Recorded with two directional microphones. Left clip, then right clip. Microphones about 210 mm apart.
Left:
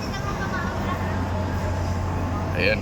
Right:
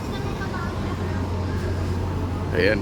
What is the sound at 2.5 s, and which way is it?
Speech, 20° right (ahead or behind).